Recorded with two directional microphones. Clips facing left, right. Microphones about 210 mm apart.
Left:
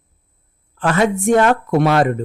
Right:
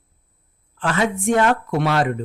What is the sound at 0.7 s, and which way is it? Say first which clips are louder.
Speech: left 5 dB; 45° left (ahead or behind).